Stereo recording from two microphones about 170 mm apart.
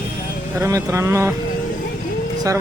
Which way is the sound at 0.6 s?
20° right (ahead or behind).